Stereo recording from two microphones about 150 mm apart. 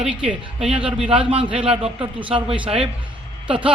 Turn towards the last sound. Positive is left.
turn(degrees=-10)  # may be behind; listen again after turning